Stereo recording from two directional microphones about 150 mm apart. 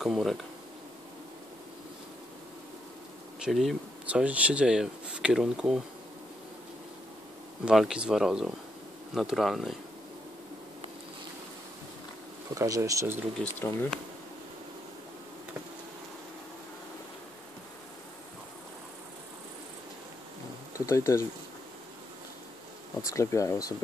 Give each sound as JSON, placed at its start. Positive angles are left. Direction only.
{"t": 0.0, "sound": "speech", "side_deg": 0}
{"t": 3.3, "sound": "speech", "side_deg": 0}
{"t": 7.6, "sound": "speech", "side_deg": -5}
{"t": 12.4, "sound": "speech", "side_deg": -25}
{"t": 13.4, "sound": "speech", "side_deg": 10}
{"t": 20.7, "sound": "speech", "side_deg": 20}
{"t": 23.0, "sound": "speech", "side_deg": 20}